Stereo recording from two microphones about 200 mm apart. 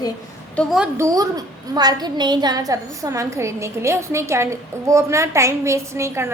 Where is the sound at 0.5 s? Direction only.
Centre (ahead or behind).